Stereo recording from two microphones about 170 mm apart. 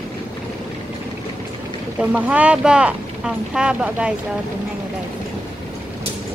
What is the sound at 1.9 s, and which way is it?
Speech, 10° right (ahead or behind).